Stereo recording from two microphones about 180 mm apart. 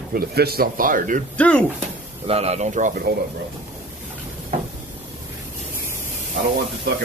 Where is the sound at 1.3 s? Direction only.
5° left (ahead or behind).